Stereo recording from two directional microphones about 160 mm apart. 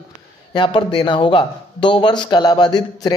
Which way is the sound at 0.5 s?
30° left (ahead or behind).